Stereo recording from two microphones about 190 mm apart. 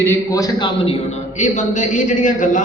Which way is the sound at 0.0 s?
15° left (ahead or behind).